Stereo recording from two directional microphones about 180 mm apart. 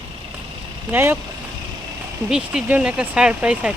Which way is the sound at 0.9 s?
15° right (ahead or behind).